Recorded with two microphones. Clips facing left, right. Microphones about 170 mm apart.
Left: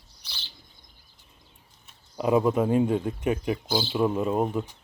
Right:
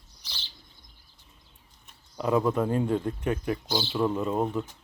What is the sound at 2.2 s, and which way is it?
Speech, 15° left (ahead or behind).